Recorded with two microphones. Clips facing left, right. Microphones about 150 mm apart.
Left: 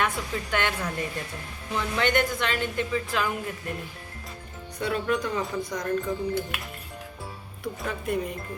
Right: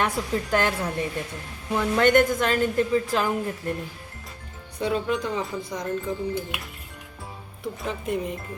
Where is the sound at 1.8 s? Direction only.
45° right (ahead or behind).